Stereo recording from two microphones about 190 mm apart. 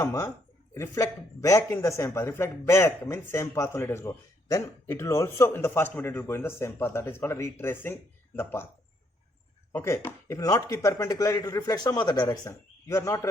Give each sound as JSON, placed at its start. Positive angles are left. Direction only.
{"t": 0.0, "sound": "speech", "side_deg": 15}
{"t": 9.7, "sound": "speech", "side_deg": 10}